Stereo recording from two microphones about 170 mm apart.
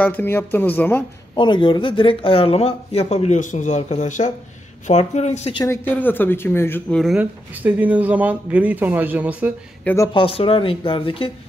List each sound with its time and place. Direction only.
0.0 s speech: 10° left (ahead or behind)
1.3 s speech: 30° left (ahead or behind)
5.7 s speech: 10° left (ahead or behind)
7.0 s speech: 5° right (ahead or behind)
10.1 s speech: 30° left (ahead or behind)